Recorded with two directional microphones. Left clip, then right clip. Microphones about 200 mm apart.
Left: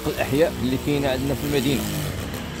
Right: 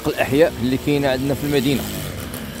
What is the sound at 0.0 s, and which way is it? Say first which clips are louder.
Speech: right 5 dB; 35° right (ahead or behind).